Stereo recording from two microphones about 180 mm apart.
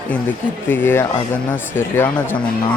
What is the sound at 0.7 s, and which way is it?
Speech, 10° left (ahead or behind).